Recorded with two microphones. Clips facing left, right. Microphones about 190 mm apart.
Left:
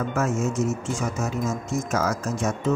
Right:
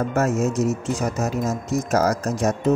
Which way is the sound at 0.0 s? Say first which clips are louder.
Right 4 dB; 40° right (ahead or behind).